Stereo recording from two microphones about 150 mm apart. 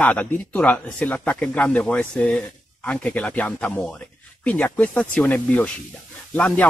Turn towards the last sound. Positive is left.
turn(degrees=10)  # may be behind; listen again after turning